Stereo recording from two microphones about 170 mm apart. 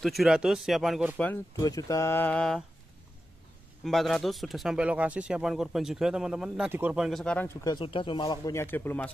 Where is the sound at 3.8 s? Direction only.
Centre (ahead or behind).